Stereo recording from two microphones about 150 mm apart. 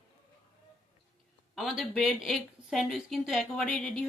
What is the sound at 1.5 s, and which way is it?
Speech, centre (ahead or behind).